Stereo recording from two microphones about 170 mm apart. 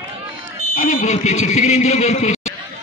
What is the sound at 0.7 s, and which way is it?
A man's voice, 45° left (ahead or behind).